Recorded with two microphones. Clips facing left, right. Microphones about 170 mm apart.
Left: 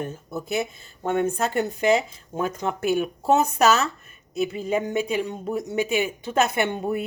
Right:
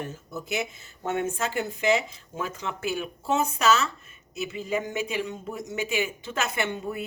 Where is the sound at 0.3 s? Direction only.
35° left (ahead or behind).